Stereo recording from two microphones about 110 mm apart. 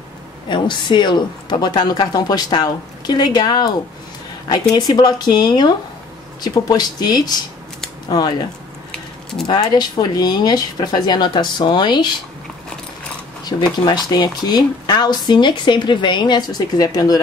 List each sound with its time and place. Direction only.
0.5 s a woman's voice: 45° left (ahead or behind)
9.5 s a woman's voice: 40° left (ahead or behind)
13.4 s a sound: 40° left (ahead or behind)
13.8 s speech: 40° left (ahead or behind)